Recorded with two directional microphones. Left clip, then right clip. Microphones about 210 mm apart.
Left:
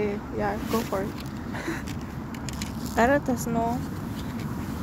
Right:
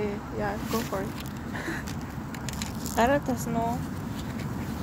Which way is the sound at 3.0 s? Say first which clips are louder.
Left 2 dB; 20° left (ahead or behind).